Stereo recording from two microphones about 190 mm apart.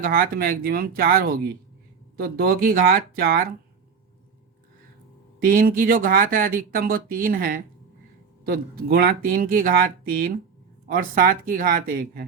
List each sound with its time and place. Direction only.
0.0 s speech: 50° right (ahead or behind)
5.4 s speech: 50° right (ahead or behind)